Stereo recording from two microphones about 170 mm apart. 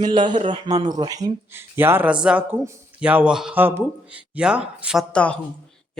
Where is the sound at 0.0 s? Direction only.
25° right (ahead or behind); by 5.0 s 5° right (ahead or behind).